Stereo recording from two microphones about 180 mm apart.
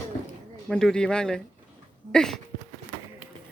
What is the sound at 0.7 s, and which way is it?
A man's voice, 5° left (ahead or behind).